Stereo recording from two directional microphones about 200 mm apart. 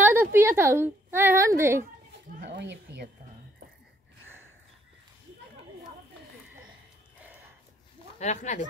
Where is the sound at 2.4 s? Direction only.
60° right (ahead or behind).